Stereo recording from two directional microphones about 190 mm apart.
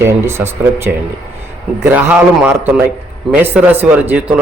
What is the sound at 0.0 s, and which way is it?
A man's voice, 15° right (ahead or behind).